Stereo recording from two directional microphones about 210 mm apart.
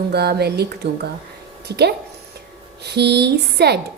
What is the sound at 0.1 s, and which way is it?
A woman's voice, 50° right (ahead or behind).